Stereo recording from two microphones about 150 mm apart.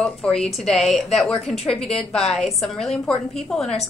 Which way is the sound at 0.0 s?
5° left (ahead or behind).